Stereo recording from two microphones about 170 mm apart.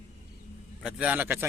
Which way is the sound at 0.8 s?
5° right (ahead or behind).